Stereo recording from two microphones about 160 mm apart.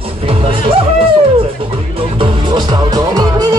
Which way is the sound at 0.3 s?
35° right (ahead or behind).